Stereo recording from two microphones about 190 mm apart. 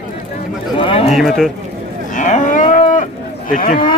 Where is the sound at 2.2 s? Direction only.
40° left (ahead or behind).